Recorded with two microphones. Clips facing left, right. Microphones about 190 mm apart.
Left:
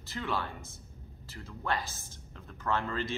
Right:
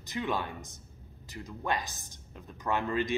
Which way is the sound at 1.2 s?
15° right (ahead or behind).